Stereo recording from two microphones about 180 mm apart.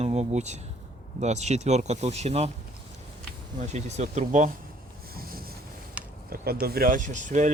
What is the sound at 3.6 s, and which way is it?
Speech, 40° right (ahead or behind).